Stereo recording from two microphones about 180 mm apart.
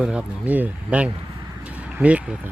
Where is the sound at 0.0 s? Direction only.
5° right (ahead or behind).